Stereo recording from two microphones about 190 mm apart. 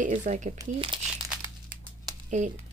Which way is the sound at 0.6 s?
25° right (ahead or behind).